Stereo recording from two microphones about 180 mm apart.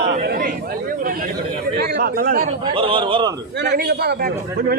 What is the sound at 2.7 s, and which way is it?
Speech, 30° right (ahead or behind).